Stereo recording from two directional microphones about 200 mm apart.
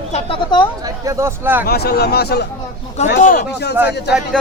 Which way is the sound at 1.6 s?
50° left (ahead or behind).